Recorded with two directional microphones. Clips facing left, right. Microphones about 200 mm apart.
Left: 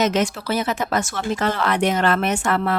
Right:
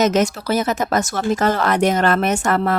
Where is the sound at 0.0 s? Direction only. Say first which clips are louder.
Right 3 dB; 45° right (ahead or behind).